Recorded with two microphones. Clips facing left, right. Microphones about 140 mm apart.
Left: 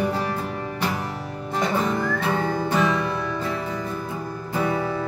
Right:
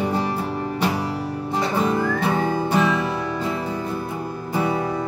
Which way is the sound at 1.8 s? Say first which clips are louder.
Right 3 dB; 10° right (ahead or behind).